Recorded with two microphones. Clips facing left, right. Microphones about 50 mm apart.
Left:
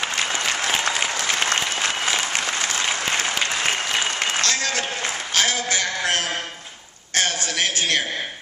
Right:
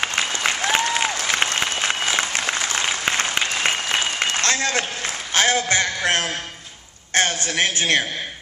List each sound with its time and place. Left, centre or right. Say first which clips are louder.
0.7 s applause: right 4 dB; centre
1.4 s applause: even; centre
4.4 s applause: right 2 dB; right
5.3 s a sound: right 4 dB; right
7.2 s a man's voice: right 3 dB; right